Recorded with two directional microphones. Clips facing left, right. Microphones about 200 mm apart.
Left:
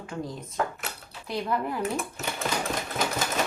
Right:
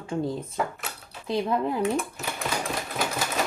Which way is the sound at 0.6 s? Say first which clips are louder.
Left 1 dB; 5° right (ahead or behind).